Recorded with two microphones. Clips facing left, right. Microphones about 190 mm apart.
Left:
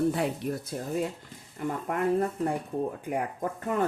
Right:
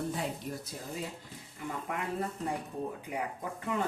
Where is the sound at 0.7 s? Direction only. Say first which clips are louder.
Left 9 dB; 55° left (ahead or behind).